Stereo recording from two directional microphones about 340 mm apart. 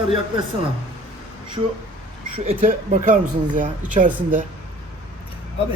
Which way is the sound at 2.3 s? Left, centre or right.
Centre.